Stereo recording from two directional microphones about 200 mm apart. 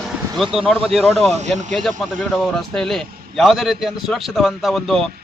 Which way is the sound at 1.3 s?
35° right (ahead or behind).